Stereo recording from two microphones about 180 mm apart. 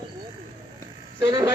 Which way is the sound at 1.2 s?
20° right (ahead or behind).